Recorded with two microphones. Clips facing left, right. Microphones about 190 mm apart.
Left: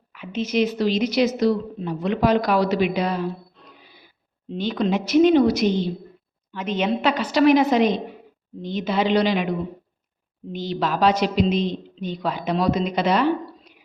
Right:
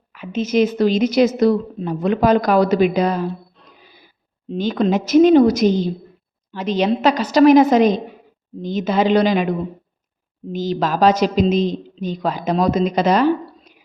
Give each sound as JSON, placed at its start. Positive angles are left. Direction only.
{"t": 0.1, "sound": "speech", "side_deg": -45}
{"t": 4.4, "sound": "a woman's voice", "side_deg": -45}